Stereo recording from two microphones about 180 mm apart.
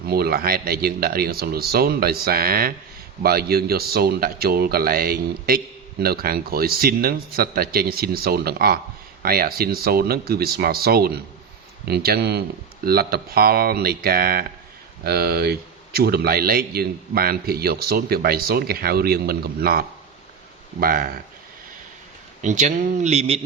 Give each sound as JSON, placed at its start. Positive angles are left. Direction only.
{"t": 0.0, "sound": "speech", "side_deg": -60}
{"t": 22.4, "sound": "speech", "side_deg": -45}